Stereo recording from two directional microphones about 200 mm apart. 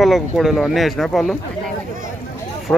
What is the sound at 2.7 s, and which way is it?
Speech, 10° left (ahead or behind).